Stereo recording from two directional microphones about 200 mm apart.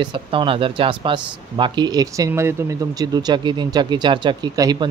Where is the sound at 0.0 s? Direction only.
25° right (ahead or behind).